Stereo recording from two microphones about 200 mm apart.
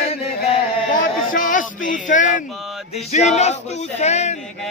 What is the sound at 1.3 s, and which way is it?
A man's voice, 40° left (ahead or behind).